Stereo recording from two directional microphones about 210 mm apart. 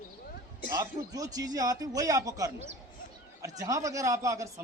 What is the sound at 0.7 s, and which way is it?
Speech, 15° right (ahead or behind).